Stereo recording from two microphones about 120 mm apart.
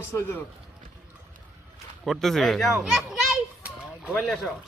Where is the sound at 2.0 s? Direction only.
Centre (ahead or behind).